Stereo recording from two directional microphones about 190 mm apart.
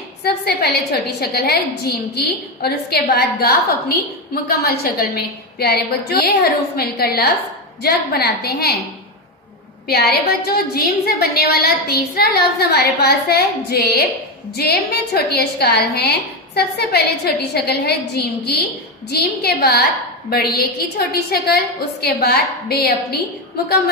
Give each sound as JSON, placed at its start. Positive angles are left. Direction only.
{"t": 0.2, "sound": "a sound", "side_deg": 55}
{"t": 1.2, "sound": "a woman's voice", "side_deg": 55}
{"t": 9.8, "sound": "a woman's voice", "side_deg": 55}